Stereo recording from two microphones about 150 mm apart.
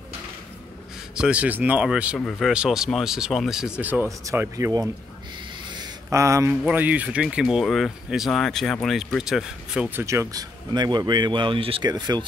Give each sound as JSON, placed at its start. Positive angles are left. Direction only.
{"t": 1.1, "sound": "speech", "side_deg": -5}
{"t": 4.2, "sound": "speech", "side_deg": -20}
{"t": 6.0, "sound": "speech", "side_deg": -20}